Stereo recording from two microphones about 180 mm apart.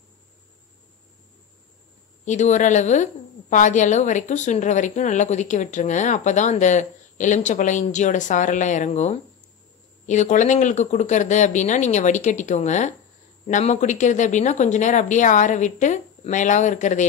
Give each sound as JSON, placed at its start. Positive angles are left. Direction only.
{"t": 2.2, "sound": "a woman's voice", "side_deg": 40}